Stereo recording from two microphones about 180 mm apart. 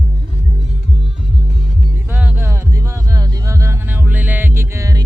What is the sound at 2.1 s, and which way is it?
Music, 10° right (ahead or behind).